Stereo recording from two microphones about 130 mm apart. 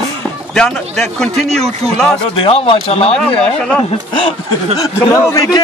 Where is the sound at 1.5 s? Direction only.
55° right (ahead or behind).